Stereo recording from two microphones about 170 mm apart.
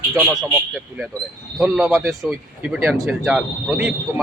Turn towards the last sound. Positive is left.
turn(degrees=-10)  # may be behind; listen again after turning